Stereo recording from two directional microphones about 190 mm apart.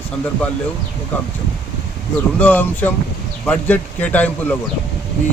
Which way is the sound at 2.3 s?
10° left (ahead or behind).